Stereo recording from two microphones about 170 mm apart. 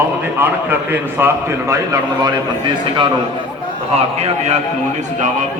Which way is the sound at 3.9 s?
40° right (ahead or behind).